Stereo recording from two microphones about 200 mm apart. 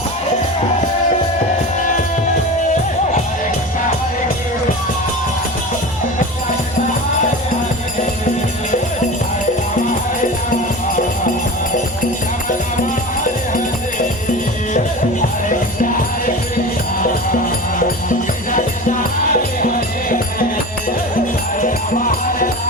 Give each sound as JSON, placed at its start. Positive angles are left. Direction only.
{"t": 15.4, "sound": "music", "side_deg": 40}
{"t": 18.5, "sound": "music", "side_deg": 45}
{"t": 21.6, "sound": "music", "side_deg": 45}